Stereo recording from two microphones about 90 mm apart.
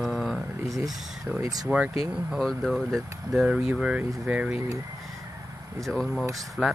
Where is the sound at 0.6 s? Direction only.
35° right (ahead or behind).